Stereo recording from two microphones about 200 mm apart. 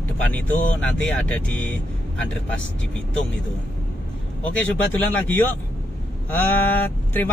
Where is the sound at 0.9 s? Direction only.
5° left (ahead or behind).